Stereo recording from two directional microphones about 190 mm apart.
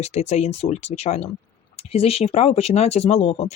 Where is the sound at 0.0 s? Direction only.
35° left (ahead or behind).